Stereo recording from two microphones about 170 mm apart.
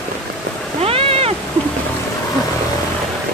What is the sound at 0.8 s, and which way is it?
Cat, 35° right (ahead or behind).